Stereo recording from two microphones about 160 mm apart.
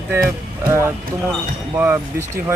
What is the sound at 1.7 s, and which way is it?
Speech, 15° right (ahead or behind).